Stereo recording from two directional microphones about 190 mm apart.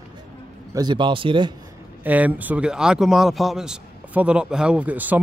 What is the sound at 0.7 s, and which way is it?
Speech, 25° right (ahead or behind).